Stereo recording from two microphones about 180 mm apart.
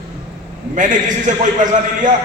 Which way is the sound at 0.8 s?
45° right (ahead or behind).